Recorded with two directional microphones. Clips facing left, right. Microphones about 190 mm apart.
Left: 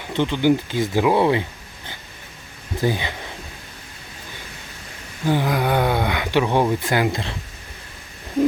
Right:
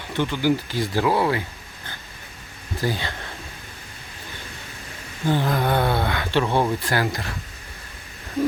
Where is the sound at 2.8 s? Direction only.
15° left (ahead or behind).